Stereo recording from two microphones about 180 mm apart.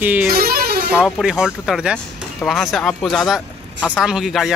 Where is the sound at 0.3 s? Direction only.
60° right (ahead or behind).